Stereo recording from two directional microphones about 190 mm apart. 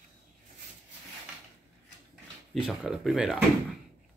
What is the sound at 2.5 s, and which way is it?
Speech, 5° right (ahead or behind).